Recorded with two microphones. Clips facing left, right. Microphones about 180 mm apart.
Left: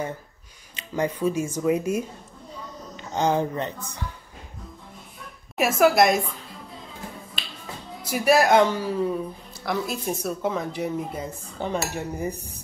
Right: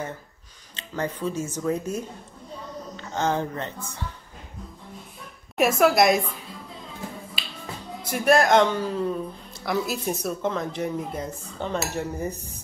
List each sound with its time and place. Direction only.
0.7 s speech: 10° left (ahead or behind)
5.6 s a woman's voice: centre (ahead or behind)
8.1 s speech: 5° left (ahead or behind)